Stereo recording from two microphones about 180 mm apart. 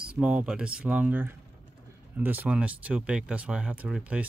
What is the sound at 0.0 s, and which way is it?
Speech, 5° right (ahead or behind).